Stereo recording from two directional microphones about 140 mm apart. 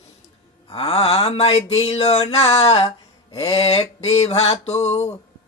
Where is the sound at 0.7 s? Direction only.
45° left (ahead or behind).